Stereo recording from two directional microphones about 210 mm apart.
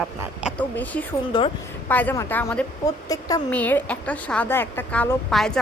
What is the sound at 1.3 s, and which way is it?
Speech, 25° left (ahead or behind).